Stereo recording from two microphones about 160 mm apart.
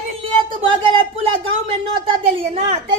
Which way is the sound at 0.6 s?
35° right (ahead or behind).